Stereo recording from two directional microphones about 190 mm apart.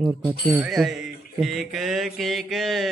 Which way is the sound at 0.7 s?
Centre (ahead or behind).